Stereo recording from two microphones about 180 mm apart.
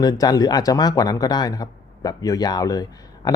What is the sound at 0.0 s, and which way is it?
Speech, 20° left (ahead or behind).